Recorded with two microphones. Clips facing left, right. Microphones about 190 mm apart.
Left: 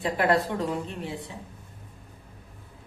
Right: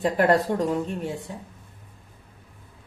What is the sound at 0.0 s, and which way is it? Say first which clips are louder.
A woman's voice: right 4 dB; 45° right (ahead or behind).